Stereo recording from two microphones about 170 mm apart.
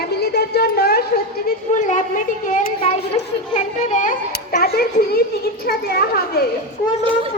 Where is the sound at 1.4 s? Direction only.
50° left (ahead or behind).